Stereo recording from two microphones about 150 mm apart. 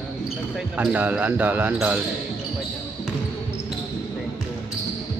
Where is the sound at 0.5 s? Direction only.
5° right (ahead or behind).